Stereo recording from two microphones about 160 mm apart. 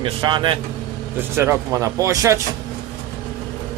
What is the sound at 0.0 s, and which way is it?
Speech, 30° right (ahead or behind).